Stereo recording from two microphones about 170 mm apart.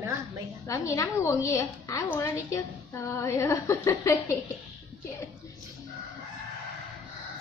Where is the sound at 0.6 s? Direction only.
20° left (ahead or behind).